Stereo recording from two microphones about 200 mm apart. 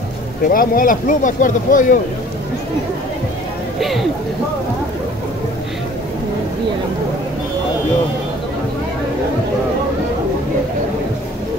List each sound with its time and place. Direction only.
0.5 s speech: 45° left (ahead or behind)
3.8 s speech: centre (ahead or behind)